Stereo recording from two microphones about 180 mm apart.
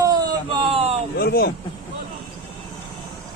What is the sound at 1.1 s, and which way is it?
Speech, 55° left (ahead or behind).